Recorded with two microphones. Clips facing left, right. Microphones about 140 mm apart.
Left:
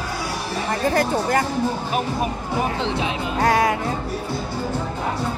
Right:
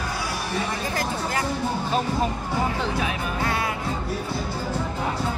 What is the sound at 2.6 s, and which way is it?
Speech, 20° left (ahead or behind).